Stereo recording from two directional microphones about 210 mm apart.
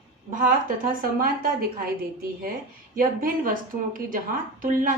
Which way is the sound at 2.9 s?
40° right (ahead or behind).